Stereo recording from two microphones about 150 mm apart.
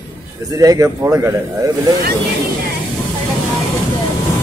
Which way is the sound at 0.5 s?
20° right (ahead or behind).